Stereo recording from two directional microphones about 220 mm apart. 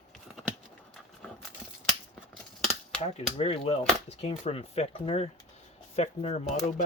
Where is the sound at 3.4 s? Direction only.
25° left (ahead or behind).